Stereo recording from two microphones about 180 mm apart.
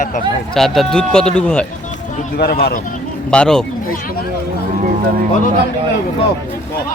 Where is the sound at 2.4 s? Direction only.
60° left (ahead or behind).